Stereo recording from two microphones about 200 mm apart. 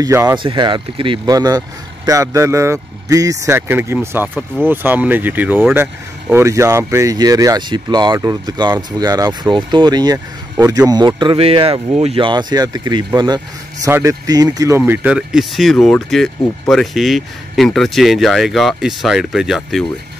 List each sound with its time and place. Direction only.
0.0 s speech: 15° right (ahead or behind)
14.8 s speech: 5° right (ahead or behind)